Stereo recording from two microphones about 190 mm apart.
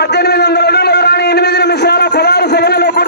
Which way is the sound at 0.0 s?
60° left (ahead or behind).